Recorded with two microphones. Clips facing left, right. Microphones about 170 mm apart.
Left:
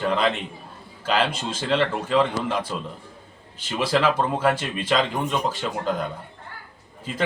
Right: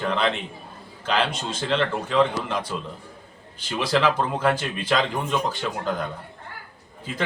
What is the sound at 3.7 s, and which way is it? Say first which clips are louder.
A man's voice: even; 5° left (ahead or behind).